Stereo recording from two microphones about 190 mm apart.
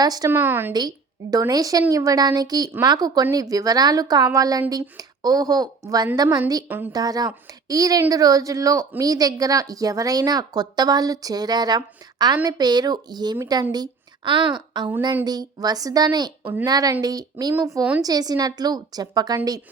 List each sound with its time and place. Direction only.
0.0 s a woman's voice: 20° right (ahead or behind)
13.7 s a sound: 25° right (ahead or behind)
14.5 s a woman's voice: 20° right (ahead or behind)